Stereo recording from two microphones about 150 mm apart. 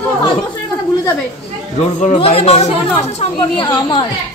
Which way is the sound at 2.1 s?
40° left (ahead or behind).